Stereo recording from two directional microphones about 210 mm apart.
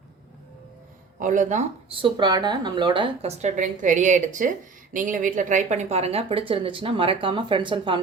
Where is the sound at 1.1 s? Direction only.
40° right (ahead or behind).